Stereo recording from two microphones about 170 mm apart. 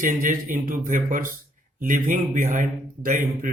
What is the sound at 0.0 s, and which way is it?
A man's voice, 50° right (ahead or behind).